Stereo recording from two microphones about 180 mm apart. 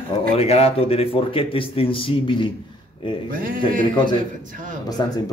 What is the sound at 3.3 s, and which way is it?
Speech, 50° right (ahead or behind).